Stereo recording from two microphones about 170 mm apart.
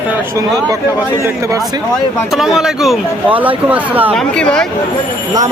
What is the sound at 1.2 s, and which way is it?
Speech, 15° right (ahead or behind).